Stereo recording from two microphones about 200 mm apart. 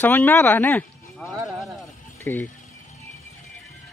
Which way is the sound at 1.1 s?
Centre (ahead or behind).